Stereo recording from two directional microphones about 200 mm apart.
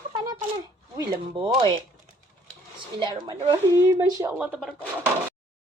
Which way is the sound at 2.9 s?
25° right (ahead or behind).